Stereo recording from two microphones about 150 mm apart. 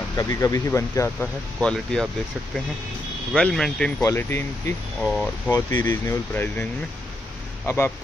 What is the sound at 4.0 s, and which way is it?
Speech, 15° left (ahead or behind).